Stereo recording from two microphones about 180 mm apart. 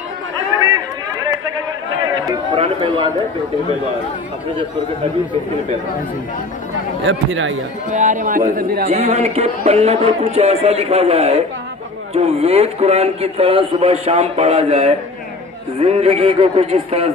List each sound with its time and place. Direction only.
2.5 s a man's voice: 30° right (ahead or behind)
7.1 s speech: 90° right
7.9 s speech: 45° right (ahead or behind)
8.8 s a man's voice: 35° right (ahead or behind)